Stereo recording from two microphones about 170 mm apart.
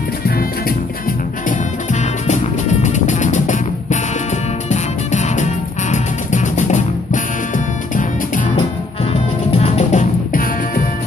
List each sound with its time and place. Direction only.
1.5 s music: 45° left (ahead or behind)
9.1 s music: 35° left (ahead or behind)